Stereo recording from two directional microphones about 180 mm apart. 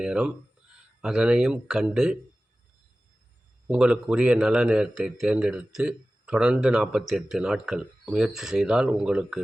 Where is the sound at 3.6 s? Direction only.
5° right (ahead or behind).